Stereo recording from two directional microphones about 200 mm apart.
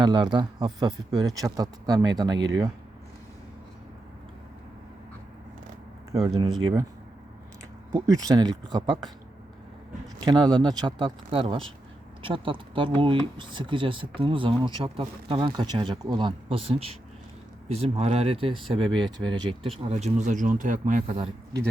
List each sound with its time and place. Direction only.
0.0 s speech: 20° right (ahead or behind)
6.2 s speech: 20° right (ahead or behind)
7.9 s speech: 15° right (ahead or behind)
10.2 s speech: 20° right (ahead or behind); by 21.2 s 40° right (ahead or behind)